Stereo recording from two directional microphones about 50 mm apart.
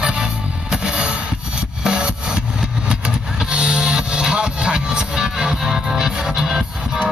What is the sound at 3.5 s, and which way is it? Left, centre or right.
Music, centre.